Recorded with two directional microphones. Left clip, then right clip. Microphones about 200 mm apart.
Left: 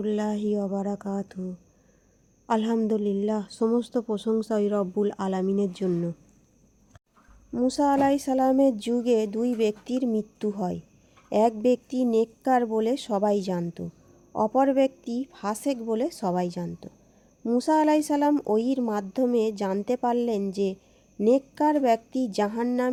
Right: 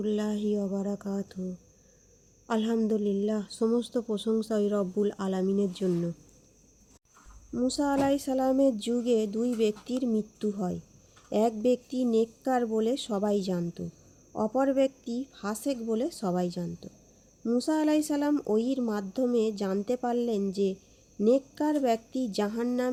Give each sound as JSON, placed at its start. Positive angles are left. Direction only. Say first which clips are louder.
{"t": 0.0, "sound": "a woman's voice", "louder": "left 3 dB", "side_deg": 25}
{"t": 2.5, "sound": "a woman's voice", "louder": "left 3 dB", "side_deg": 25}
{"t": 7.5, "sound": "a woman's voice", "louder": "left 5 dB", "side_deg": 25}